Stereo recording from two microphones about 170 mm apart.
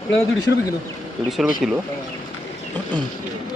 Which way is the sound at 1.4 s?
Centre (ahead or behind).